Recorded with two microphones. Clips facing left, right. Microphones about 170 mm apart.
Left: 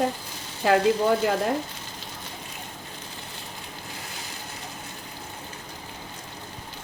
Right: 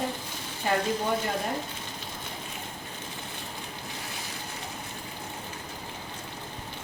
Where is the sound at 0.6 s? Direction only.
90° left.